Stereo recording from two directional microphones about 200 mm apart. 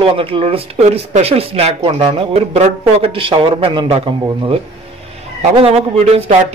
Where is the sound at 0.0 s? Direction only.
25° right (ahead or behind).